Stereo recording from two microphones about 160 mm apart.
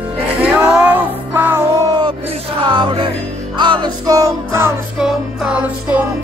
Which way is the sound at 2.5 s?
30° right (ahead or behind).